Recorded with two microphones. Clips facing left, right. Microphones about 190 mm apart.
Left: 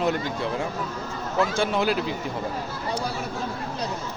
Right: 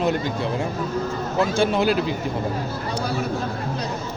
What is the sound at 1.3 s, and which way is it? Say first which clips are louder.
Speech: right 3 dB; 30° right (ahead or behind).